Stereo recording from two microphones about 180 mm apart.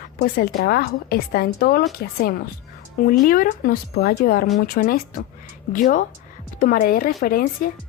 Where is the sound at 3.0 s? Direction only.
50° left (ahead or behind).